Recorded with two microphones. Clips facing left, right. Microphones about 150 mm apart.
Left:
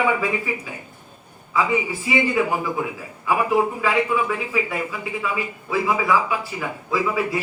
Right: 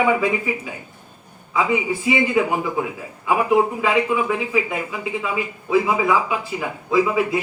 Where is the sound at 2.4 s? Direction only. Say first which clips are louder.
Right 2 dB; 15° right (ahead or behind).